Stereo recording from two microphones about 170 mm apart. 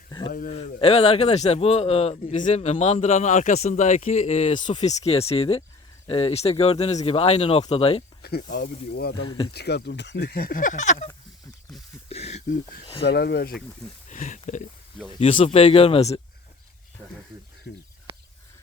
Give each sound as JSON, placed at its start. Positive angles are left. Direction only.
{"t": 0.3, "sound": "a man's voice", "side_deg": 50}
{"t": 0.5, "sound": "a man's voice", "side_deg": 35}
{"t": 2.2, "sound": "a man's voice", "side_deg": 45}
{"t": 8.2, "sound": "speech", "side_deg": 70}
{"t": 9.2, "sound": "speech", "side_deg": 30}
{"t": 9.5, "sound": "speech", "side_deg": 75}
{"t": 12.0, "sound": "a sound", "side_deg": 35}
{"t": 13.1, "sound": "speech", "side_deg": 75}
{"t": 14.1, "sound": "speech", "side_deg": 45}
{"t": 15.2, "sound": "a man's voice", "side_deg": 35}
{"t": 17.7, "sound": "speech", "side_deg": 75}
{"t": 18.1, "sound": "a sound", "side_deg": -30}